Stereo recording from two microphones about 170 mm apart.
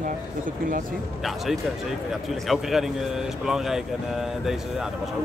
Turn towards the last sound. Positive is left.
turn(degrees=0)  # may be behind; listen again after turning